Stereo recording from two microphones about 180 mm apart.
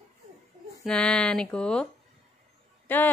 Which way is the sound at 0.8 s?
5° left (ahead or behind).